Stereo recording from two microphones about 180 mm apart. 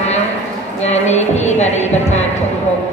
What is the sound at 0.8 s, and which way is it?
Speech, 40° left (ahead or behind).